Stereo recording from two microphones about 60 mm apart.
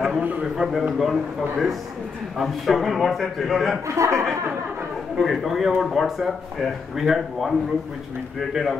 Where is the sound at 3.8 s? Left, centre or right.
Right.